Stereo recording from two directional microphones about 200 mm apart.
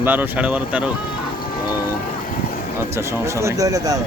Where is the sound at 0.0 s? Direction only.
10° right (ahead or behind).